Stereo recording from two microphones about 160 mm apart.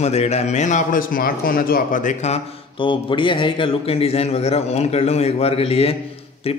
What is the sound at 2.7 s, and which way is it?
A man's voice, 30° left (ahead or behind).